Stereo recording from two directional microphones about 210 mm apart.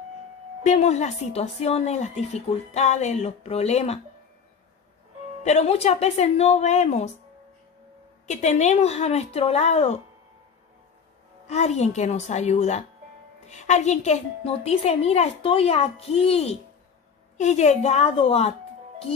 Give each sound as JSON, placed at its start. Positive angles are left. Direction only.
{"t": 0.7, "sound": "a woman's voice", "side_deg": 30}
{"t": 5.4, "sound": "a woman's voice", "side_deg": 30}
{"t": 8.3, "sound": "a woman's voice", "side_deg": 35}
{"t": 11.4, "sound": "a woman's voice", "side_deg": 30}